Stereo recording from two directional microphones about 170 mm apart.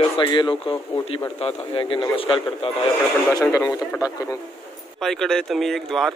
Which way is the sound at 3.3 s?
15° left (ahead or behind).